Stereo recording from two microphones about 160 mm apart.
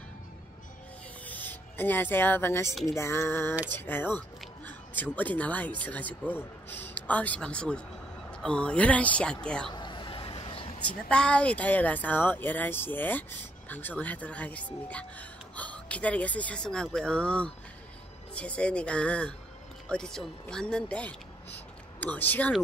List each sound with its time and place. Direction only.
1.2 s a man's voice: 10° left (ahead or behind)
9.7 s vehicle: 30° left (ahead or behind)
10.8 s speech: 10° left (ahead or behind)